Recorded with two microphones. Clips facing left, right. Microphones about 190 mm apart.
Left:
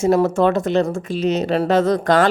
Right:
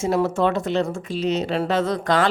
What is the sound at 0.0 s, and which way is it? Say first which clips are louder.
Speech: left 5 dB; 45° left (ahead or behind).